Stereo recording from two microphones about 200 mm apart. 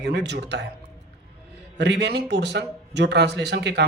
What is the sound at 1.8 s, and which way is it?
Speech, 60° right (ahead or behind).